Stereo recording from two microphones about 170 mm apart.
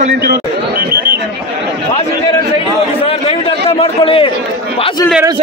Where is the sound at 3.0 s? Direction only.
35° left (ahead or behind).